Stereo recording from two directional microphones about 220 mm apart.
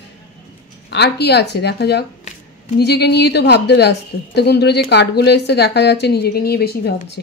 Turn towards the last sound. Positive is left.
turn(degrees=45)  # may be behind; listen again after turning